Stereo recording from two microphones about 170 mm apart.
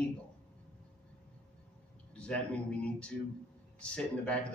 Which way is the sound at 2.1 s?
5° left (ahead or behind).